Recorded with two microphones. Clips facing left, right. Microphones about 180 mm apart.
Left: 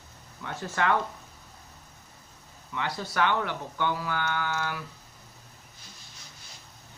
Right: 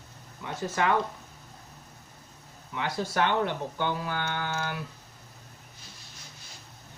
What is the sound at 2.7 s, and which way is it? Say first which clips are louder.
Speech: right 1 dB; 20° right (ahead or behind).